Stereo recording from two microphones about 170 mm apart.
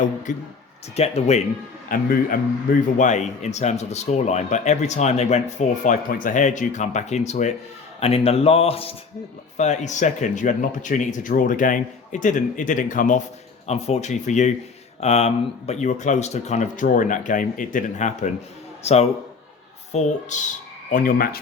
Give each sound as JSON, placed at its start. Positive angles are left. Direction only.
{"t": 0.3, "sound": "speech", "side_deg": 45}
{"t": 1.9, "sound": "speech", "side_deg": 55}
{"t": 3.0, "sound": "speech", "side_deg": 45}
{"t": 13.7, "sound": "speech", "side_deg": 40}
{"t": 20.9, "sound": "speech", "side_deg": 55}